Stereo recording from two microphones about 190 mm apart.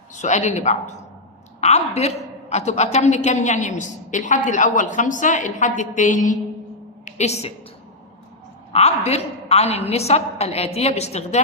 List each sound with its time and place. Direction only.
0.1 s a woman's voice: 40° left (ahead or behind)
7.0 s a sound: 35° left (ahead or behind)
8.7 s a man's voice: 35° left (ahead or behind)